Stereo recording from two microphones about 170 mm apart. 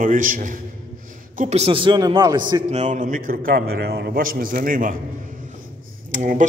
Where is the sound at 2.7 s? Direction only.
45° right (ahead or behind).